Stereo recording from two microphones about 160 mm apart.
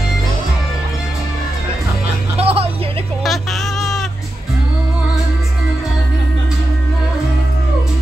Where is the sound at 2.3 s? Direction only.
40° right (ahead or behind).